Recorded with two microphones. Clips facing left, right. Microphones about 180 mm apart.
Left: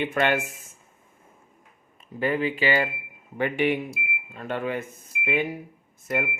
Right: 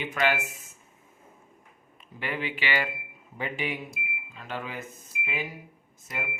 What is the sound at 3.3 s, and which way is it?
Speech, 60° left (ahead or behind).